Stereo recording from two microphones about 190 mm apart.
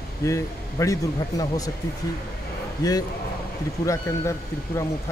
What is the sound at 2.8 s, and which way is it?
A man's voice, 20° left (ahead or behind).